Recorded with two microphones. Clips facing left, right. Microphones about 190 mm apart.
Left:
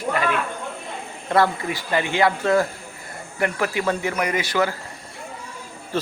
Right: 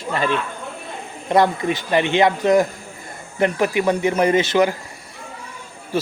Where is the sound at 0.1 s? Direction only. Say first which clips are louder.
Right 2 dB; 30° right (ahead or behind).